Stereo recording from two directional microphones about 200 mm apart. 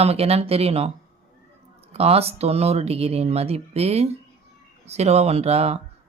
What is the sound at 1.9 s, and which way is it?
Speech, 30° right (ahead or behind).